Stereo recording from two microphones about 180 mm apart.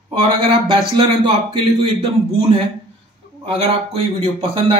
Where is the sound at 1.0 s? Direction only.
25° right (ahead or behind).